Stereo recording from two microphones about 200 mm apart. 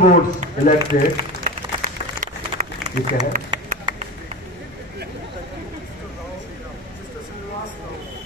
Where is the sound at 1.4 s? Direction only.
40° right (ahead or behind).